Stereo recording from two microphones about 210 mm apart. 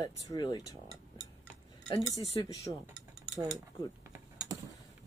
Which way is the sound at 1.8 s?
25° left (ahead or behind).